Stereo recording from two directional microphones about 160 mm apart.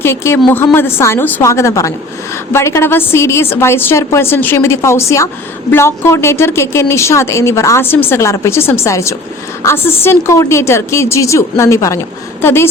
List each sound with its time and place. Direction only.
0.0 s a woman's voice: 15° left (ahead or behind)